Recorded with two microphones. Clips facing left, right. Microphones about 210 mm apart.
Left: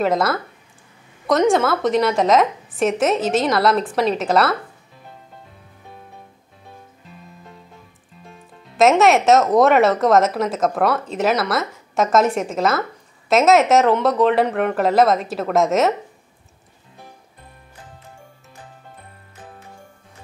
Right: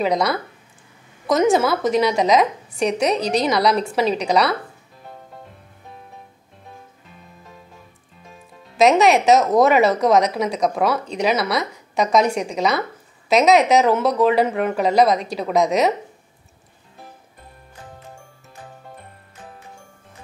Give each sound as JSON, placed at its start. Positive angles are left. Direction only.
{"t": 0.0, "sound": "speech", "side_deg": 0}
{"t": 8.3, "sound": "speech", "side_deg": 0}